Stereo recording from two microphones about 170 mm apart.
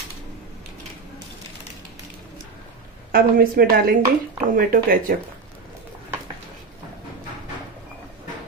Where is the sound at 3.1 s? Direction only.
60° right (ahead or behind).